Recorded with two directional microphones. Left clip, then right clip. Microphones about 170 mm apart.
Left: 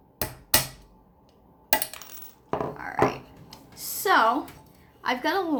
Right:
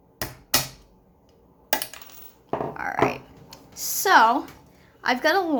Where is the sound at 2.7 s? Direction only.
45° right (ahead or behind).